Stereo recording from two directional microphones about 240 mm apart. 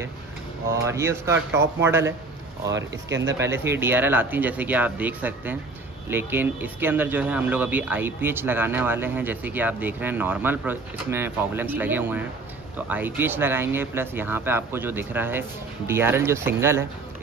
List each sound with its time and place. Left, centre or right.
0.8 s speech: centre
2.7 s speech: right
3.3 s speech: centre